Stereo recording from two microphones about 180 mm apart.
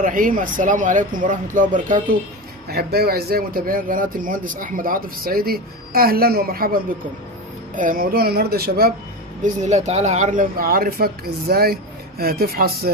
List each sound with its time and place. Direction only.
0.0 s speech: 50° right (ahead or behind)
2.6 s speech: 60° right (ahead or behind)
9.4 s speech: 40° right (ahead or behind); by 12.9 s 55° right (ahead or behind)